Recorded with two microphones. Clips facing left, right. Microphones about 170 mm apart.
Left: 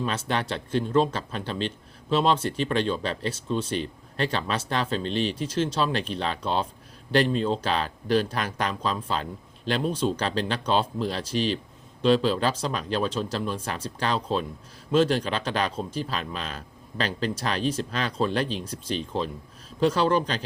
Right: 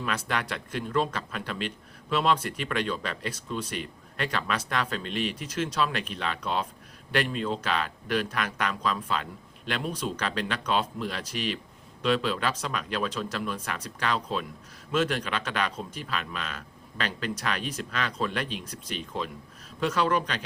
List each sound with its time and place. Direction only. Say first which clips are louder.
0.0 s a man's voice: left 3 dB; 30° left (ahead or behind)